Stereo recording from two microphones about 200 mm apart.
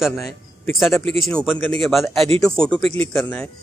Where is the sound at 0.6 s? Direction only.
10° left (ahead or behind).